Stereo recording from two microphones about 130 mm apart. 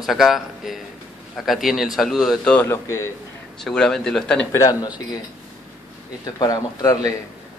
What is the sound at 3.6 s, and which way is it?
Speech, 5° left (ahead or behind).